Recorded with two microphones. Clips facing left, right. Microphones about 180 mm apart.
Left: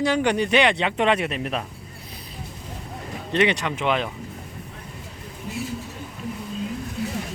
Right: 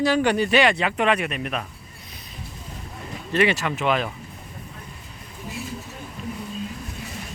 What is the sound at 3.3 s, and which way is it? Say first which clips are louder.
Speech: even; 20° left (ahead or behind).